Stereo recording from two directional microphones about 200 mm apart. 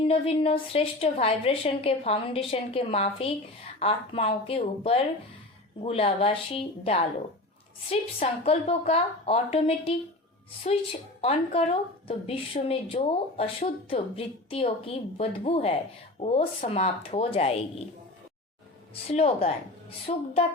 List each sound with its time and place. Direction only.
0.0 s a woman's voice: 30° left (ahead or behind)
11.2 s a woman's voice: 30° left (ahead or behind)
19.1 s speech: 30° left (ahead or behind)